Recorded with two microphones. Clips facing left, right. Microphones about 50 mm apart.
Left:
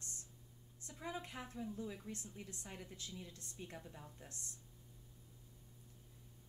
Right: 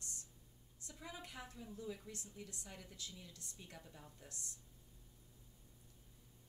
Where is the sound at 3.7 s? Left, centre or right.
Centre.